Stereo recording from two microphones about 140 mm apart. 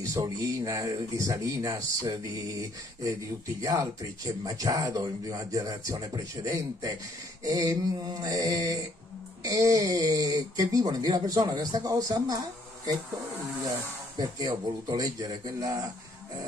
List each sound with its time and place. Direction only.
0.0 s speech: 25° right (ahead or behind)
3.6 s speech: 25° right (ahead or behind)
14.1 s speech: 30° right (ahead or behind)